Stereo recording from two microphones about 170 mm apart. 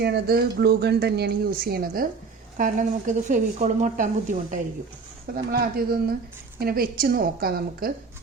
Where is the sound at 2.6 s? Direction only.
50° right (ahead or behind).